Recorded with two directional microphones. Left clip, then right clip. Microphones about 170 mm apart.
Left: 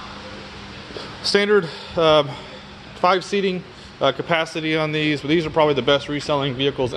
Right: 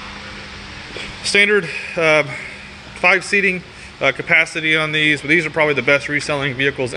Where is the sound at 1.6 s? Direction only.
15° left (ahead or behind).